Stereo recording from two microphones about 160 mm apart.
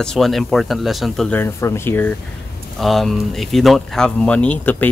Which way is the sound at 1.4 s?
15° left (ahead or behind).